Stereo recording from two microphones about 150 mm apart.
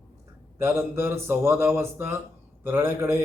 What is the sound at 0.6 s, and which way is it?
A man's voice, 15° right (ahead or behind).